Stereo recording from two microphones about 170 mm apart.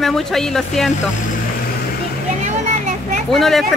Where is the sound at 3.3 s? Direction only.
Centre (ahead or behind).